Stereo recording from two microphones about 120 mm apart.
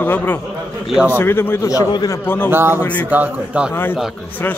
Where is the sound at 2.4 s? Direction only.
20° right (ahead or behind).